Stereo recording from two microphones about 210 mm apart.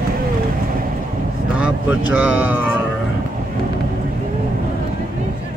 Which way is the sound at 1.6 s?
5° right (ahead or behind).